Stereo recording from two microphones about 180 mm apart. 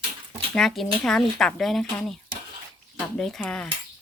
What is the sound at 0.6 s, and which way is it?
Speech, centre (ahead or behind).